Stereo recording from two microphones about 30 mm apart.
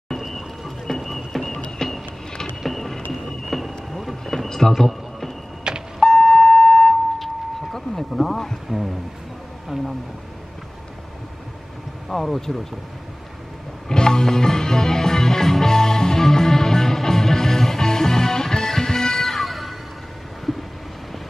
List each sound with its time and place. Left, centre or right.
0.2 s a sound: centre
2.6 s a sound: centre
3.1 s thunder: centre
4.5 s a sound: centre
5.7 s beep: right
6.0 s beep: centre
8.1 s speech: centre
8.6 s speech: centre
12.1 s speech: centre
13.8 s music: left; by 19.7 s centre